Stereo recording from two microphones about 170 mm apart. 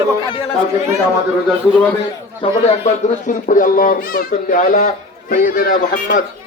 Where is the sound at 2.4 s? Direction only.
30° left (ahead or behind).